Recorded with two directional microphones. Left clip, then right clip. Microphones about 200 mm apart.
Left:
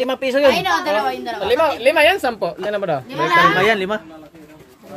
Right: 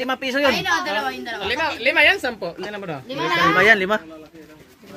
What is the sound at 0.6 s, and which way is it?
A woman's voice, 50° left (ahead or behind).